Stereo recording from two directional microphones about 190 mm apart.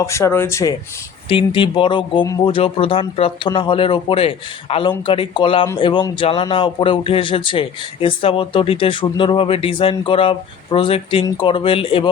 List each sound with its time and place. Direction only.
0.0 s speech: 15° left (ahead or behind)
1.3 s speech: 25° left (ahead or behind)
2.2 s speech: 15° left (ahead or behind)
2.5 s speech: 30° left (ahead or behind)